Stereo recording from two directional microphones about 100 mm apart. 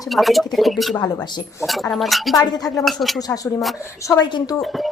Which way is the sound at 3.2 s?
40° left (ahead or behind).